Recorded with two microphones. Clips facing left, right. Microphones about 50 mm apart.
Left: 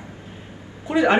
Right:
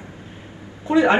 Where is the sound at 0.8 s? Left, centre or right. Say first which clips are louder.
Right 2 dB; right.